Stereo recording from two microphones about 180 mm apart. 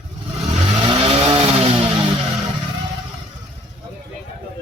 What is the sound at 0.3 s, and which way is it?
Vehicle, 30° right (ahead or behind).